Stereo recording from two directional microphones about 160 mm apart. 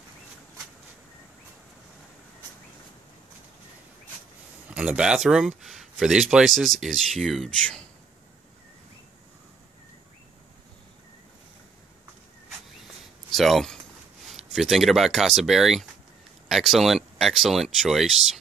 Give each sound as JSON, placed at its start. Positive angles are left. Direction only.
{"t": 4.6, "sound": "speech", "side_deg": -5}
{"t": 13.3, "sound": "speech", "side_deg": 0}